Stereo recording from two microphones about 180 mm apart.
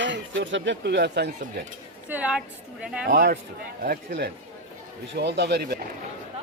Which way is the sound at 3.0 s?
55° right (ahead or behind).